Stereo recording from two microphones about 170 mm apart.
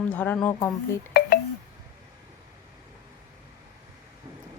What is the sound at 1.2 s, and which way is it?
Telephone dialing, 65° left (ahead or behind).